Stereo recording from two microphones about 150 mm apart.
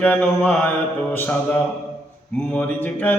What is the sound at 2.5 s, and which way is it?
Mantra, 10° left (ahead or behind).